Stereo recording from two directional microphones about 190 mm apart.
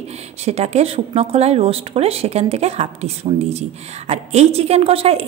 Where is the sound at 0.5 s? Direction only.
35° right (ahead or behind).